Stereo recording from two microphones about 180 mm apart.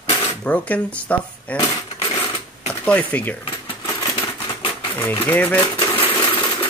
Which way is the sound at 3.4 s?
25° left (ahead or behind).